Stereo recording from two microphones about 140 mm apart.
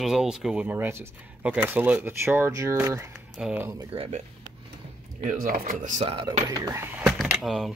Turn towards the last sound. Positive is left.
turn(degrees=0)  # may be behind; listen again after turning